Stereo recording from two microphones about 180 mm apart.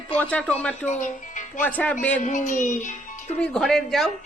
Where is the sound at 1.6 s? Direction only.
10° left (ahead or behind).